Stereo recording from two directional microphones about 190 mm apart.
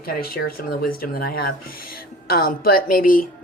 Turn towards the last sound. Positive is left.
turn(degrees=50)  # may be behind; listen again after turning